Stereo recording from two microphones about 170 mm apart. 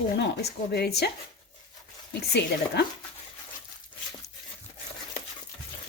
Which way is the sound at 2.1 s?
75° left (ahead or behind).